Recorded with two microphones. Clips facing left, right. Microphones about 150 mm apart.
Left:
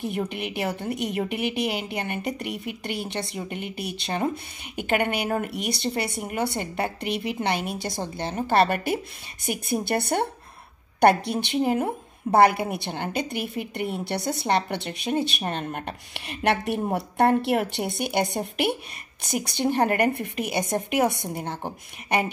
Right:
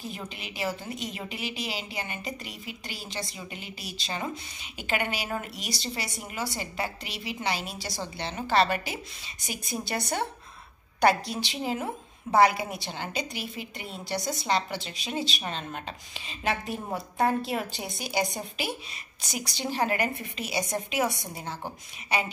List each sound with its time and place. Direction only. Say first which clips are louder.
0.3 s a woman's voice: left 5 dB; 60° left (ahead or behind)